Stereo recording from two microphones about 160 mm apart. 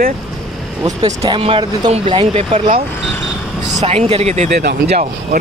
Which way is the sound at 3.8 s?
40° right (ahead or behind).